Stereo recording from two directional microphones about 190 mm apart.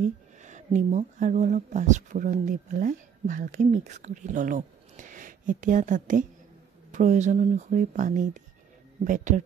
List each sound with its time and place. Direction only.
0.0 s speech: 40° right (ahead or behind)